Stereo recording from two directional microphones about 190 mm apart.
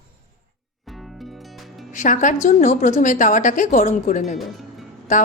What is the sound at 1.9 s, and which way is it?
A woman's voice, 40° left (ahead or behind).